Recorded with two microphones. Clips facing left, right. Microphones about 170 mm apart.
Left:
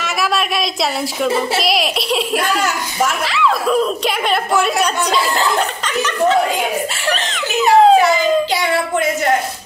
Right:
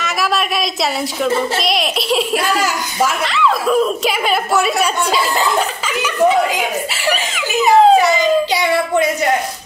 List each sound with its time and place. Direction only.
0.0 s a woman's voice: centre (ahead or behind)
7.1 s giggle: 5° right (ahead or behind)